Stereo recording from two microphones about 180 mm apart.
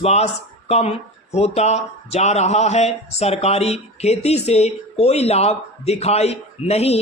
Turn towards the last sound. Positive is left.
turn(degrees=35)  # may be behind; listen again after turning